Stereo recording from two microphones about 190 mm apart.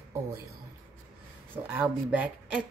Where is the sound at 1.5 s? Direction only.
10° right (ahead or behind).